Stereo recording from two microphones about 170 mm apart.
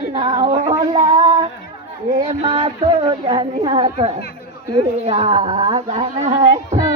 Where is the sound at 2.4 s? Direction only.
35° right (ahead or behind).